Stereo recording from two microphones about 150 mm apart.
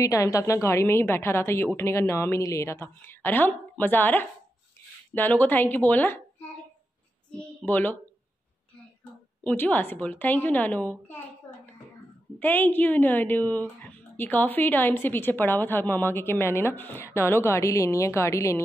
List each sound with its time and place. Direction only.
0.0 s speech: 20° left (ahead or behind)
7.2 s a woman's voice: 10° left (ahead or behind)
9.4 s speech: 10° left (ahead or behind)
12.4 s speech: 15° left (ahead or behind)